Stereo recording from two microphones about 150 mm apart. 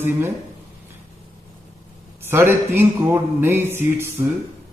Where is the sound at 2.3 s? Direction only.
15° right (ahead or behind).